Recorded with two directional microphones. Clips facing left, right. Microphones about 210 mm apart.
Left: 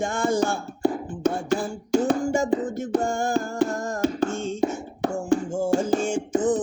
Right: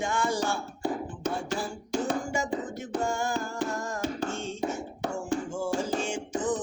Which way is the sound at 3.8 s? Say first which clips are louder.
Left 7 dB; 45° left (ahead or behind).